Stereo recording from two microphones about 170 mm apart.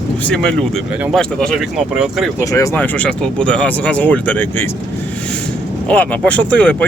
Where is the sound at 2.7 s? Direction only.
10° left (ahead or behind).